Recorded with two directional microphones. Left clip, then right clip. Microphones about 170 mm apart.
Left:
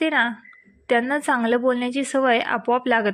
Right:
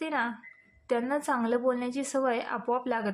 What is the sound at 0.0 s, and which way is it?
A woman's voice, 25° left (ahead or behind).